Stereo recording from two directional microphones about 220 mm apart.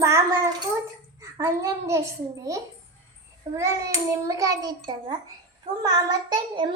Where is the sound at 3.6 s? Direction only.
15° right (ahead or behind).